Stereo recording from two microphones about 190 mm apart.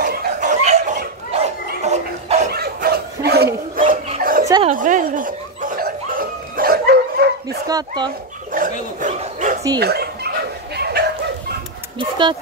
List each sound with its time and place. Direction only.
0.0 s dog: 45° right (ahead or behind)
2.5 s bow-wow: 55° right (ahead or behind)
4.6 s snicker: 45° right (ahead or behind)
7.6 s speech: 20° right (ahead or behind)
8.5 s dog: 45° right (ahead or behind)
9.0 s speech: 40° right (ahead or behind)
9.8 s dog: 55° right (ahead or behind)
12.0 s speech: 25° right (ahead or behind)